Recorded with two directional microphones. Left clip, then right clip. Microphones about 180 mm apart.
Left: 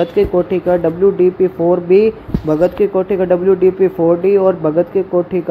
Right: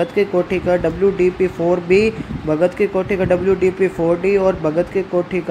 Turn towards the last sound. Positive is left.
turn(degrees=0)  # may be behind; listen again after turning